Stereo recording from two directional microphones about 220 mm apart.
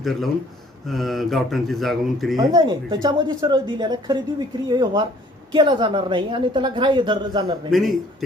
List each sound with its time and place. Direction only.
0.0 s speech: centre (ahead or behind)
2.4 s a woman's voice: 20° right (ahead or behind)
7.7 s speech: centre (ahead or behind)